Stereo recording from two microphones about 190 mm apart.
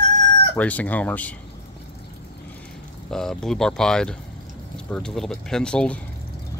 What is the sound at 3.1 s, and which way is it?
Fowl, 5° left (ahead or behind).